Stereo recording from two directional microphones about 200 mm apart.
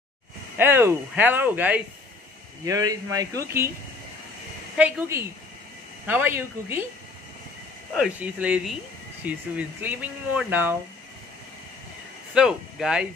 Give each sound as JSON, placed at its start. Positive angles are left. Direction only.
{"t": 0.6, "sound": "speech", "side_deg": -10}
{"t": 4.7, "sound": "speech", "side_deg": -5}
{"t": 8.0, "sound": "speech", "side_deg": -5}
{"t": 12.4, "sound": "speech", "side_deg": -5}